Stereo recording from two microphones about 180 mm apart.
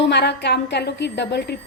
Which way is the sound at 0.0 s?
70° left (ahead or behind).